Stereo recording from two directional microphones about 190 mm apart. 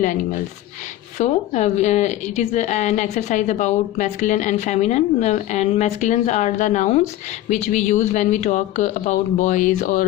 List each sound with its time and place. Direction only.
1.2 s a woman's voice: 35° left (ahead or behind)